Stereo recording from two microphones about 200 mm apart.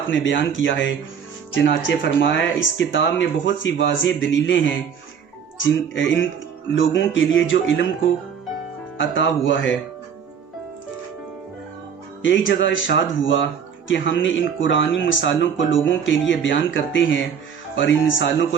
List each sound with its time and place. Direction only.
0.1 s speech: 70° left (ahead or behind)
9.0 s speech: 70° left (ahead or behind)
12.2 s speech: 70° left (ahead or behind)